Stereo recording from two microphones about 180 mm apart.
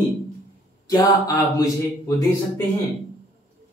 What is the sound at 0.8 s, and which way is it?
Speech, 20° left (ahead or behind).